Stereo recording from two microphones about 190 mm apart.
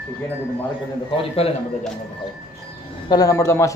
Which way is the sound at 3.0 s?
20° left (ahead or behind).